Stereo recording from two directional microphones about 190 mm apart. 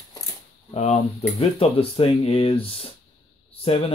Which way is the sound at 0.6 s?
35° left (ahead or behind).